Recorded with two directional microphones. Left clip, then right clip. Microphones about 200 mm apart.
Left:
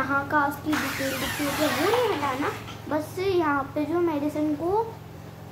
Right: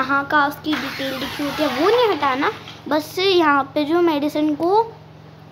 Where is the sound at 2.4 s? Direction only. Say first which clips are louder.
Right 7 dB; 60° right (ahead or behind).